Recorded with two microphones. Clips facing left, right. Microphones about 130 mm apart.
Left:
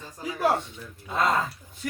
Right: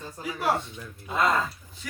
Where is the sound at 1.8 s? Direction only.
50° left (ahead or behind).